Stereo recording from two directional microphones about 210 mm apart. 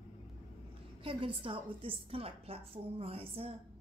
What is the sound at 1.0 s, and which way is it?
A woman's voice, 25° right (ahead or behind).